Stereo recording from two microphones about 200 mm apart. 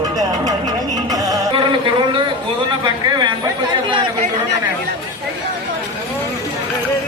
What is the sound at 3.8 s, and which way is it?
Chatter, 25° right (ahead or behind).